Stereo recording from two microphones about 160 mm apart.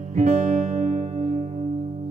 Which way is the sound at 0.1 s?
55° right (ahead or behind).